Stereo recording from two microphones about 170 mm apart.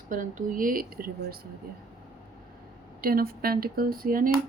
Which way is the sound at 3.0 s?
60° right (ahead or behind).